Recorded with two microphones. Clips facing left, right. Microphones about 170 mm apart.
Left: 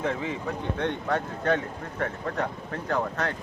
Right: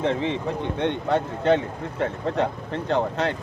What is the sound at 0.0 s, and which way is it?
Speech, 25° right (ahead or behind).